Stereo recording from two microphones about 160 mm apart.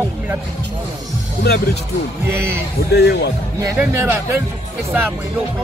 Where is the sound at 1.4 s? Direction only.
80° left.